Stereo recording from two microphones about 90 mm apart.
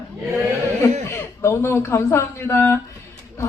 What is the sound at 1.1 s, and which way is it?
Speech, 30° left (ahead or behind).